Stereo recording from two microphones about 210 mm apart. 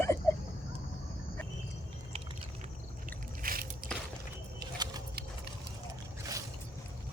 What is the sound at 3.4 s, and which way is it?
Crushing, 45° right (ahead or behind).